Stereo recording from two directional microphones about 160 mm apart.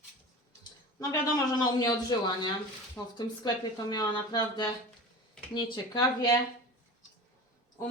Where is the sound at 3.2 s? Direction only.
25° left (ahead or behind).